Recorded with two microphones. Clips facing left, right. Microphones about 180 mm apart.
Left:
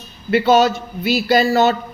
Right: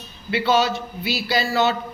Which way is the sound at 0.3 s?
45° left (ahead or behind).